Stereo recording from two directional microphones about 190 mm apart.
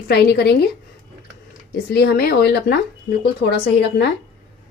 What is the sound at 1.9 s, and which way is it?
Speech, 55° left (ahead or behind).